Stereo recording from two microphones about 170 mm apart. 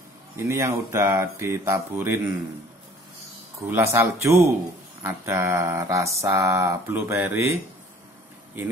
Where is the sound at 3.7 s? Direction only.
15° right (ahead or behind).